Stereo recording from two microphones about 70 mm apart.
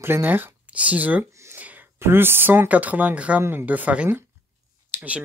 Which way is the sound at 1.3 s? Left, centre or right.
Right.